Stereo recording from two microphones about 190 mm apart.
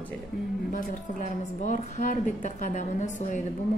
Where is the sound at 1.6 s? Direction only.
40° left (ahead or behind).